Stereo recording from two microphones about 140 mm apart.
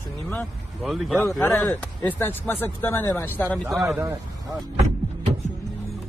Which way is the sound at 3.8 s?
20° right (ahead or behind).